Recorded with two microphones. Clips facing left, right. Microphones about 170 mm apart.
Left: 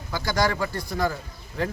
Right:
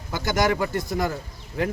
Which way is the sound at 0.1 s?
20° right (ahead or behind).